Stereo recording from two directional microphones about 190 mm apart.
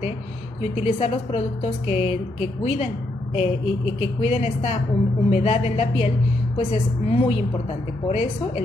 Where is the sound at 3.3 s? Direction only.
30° left (ahead or behind).